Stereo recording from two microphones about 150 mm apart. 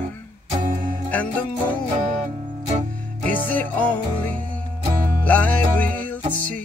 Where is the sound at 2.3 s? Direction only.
40° right (ahead or behind).